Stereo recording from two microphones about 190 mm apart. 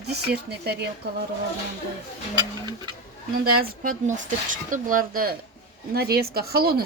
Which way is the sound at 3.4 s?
50° right (ahead or behind).